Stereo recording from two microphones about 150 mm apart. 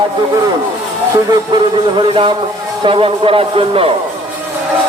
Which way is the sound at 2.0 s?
35° right (ahead or behind).